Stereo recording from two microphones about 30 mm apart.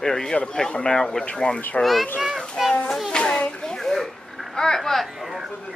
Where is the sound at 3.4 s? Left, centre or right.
Left.